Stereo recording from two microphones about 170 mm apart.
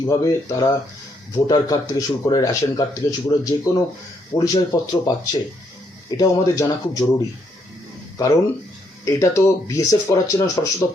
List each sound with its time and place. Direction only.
0.0 s speech: 20° left (ahead or behind)
9.0 s speech: 15° left (ahead or behind)